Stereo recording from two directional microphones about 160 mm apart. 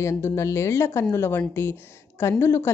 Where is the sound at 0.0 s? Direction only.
15° left (ahead or behind).